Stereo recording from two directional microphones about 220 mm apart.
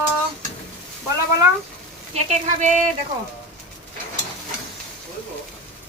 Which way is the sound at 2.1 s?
35° right (ahead or behind).